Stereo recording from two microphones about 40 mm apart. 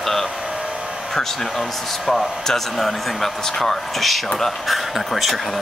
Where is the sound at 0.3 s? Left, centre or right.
Centre.